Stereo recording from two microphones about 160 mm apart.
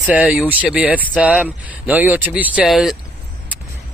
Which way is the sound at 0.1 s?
5° right (ahead or behind).